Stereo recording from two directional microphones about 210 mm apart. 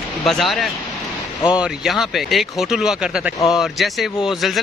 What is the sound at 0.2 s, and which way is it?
Speech, centre (ahead or behind).